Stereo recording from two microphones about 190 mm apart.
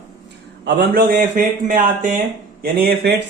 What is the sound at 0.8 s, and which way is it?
Speech, 55° right (ahead or behind).